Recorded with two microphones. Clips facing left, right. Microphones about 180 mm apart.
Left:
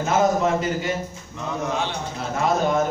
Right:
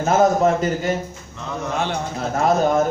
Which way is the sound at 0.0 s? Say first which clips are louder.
Right 4 dB; 45° right (ahead or behind).